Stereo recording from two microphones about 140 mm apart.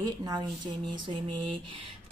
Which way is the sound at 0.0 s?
30° right (ahead or behind).